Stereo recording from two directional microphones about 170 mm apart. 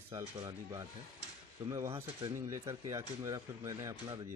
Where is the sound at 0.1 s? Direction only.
20° right (ahead or behind).